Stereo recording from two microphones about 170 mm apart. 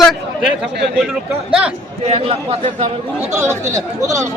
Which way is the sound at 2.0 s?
35° right (ahead or behind).